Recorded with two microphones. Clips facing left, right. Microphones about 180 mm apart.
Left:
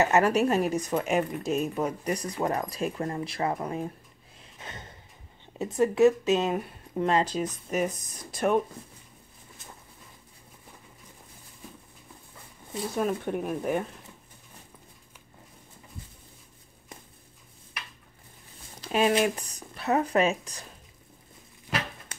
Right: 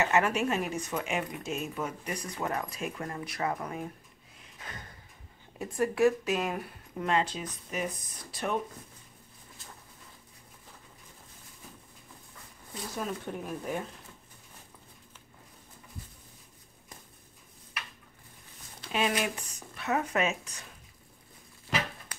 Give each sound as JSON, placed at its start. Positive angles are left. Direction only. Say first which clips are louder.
{"t": 0.0, "sound": "speech", "louder": "left 5 dB", "side_deg": 40}
{"t": 4.6, "sound": "a sound", "louder": "left 2 dB", "side_deg": 25}
{"t": 5.6, "sound": "a woman's voice", "louder": "left 5 dB", "side_deg": 20}
{"t": 12.9, "sound": "speech", "louder": "left 7 dB", "side_deg": 55}
{"t": 18.8, "sound": "a sound", "louder": "left 6 dB", "side_deg": 45}
{"t": 19.2, "sound": "speech", "louder": "left 7 dB", "side_deg": 35}